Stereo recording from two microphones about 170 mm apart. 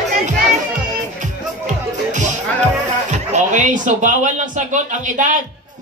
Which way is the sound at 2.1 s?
45° right (ahead or behind).